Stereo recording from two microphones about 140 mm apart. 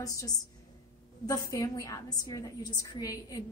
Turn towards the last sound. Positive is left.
turn(degrees=25)  # may be behind; listen again after turning